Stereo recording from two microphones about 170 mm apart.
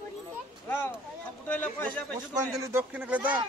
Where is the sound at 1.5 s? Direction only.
10° left (ahead or behind).